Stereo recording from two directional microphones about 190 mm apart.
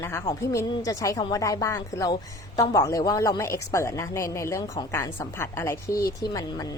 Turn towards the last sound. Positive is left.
turn(degrees=20)  # may be behind; listen again after turning